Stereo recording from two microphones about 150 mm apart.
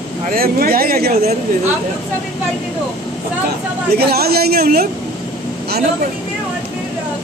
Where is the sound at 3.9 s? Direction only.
90° right.